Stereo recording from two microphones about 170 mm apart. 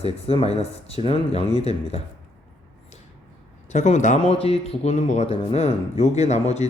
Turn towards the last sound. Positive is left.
turn(degrees=40)  # may be behind; listen again after turning